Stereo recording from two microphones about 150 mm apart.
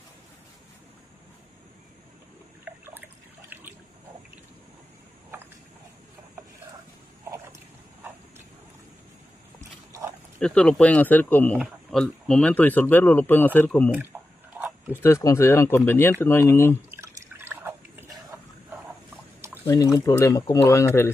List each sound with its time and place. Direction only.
2.7 s water: 10° right (ahead or behind)
9.6 s a sound: 20° right (ahead or behind)
10.4 s speech: 5° left (ahead or behind)
14.1 s chewing: 20° right (ahead or behind)
14.9 s speech: 15° left (ahead or behind)
16.9 s drip: 15° right (ahead or behind)
19.6 s speech: 20° left (ahead or behind)